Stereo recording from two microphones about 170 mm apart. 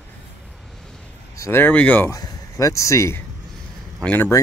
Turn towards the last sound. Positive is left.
turn(degrees=10)  # may be behind; listen again after turning